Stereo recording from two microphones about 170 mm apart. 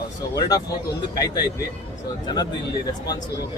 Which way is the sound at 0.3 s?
20° left (ahead or behind).